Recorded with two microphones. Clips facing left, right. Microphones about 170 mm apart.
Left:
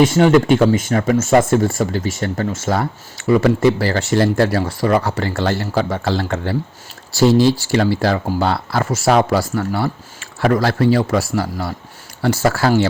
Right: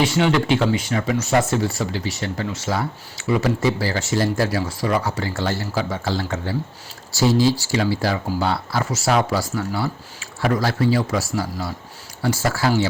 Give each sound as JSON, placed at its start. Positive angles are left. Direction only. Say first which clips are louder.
{"t": 0.0, "sound": "speech", "louder": "left 7 dB", "side_deg": 45}